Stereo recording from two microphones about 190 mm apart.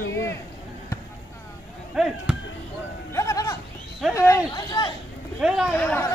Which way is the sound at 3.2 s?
15° left (ahead or behind).